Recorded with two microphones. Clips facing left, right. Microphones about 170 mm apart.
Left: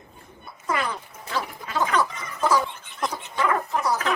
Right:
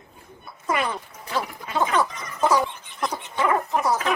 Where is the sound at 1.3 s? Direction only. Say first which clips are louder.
Right 2 dB; 20° right (ahead or behind).